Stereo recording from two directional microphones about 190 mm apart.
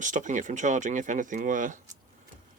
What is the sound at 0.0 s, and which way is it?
Speech, 40° right (ahead or behind).